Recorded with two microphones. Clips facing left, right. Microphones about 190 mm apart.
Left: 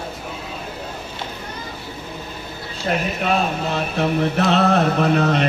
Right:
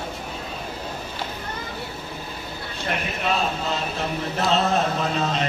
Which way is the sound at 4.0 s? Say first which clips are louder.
Left 10 dB; 65° left (ahead or behind).